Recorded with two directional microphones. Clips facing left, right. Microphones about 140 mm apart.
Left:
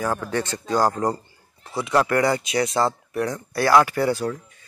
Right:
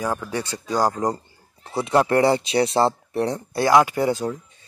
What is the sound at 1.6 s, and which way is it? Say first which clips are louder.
Speech: right 2 dB; 30° right (ahead or behind).